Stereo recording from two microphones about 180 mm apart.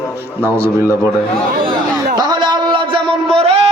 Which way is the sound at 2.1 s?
25° right (ahead or behind).